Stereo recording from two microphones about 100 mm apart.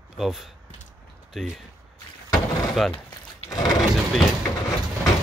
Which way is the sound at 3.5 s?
40° left (ahead or behind).